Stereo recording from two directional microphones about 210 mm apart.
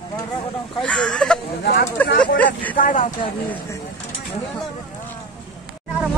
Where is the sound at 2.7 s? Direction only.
40° left (ahead or behind).